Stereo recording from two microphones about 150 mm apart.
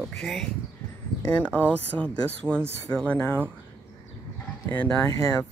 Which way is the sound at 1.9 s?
5° left (ahead or behind).